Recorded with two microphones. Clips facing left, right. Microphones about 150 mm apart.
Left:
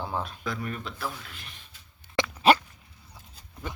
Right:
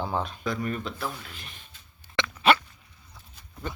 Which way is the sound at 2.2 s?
40° left (ahead or behind).